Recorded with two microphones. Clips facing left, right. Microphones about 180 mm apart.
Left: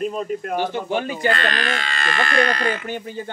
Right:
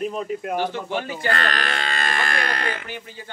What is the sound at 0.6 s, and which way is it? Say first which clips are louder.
Speech: left 3 dB; 20° left (ahead or behind).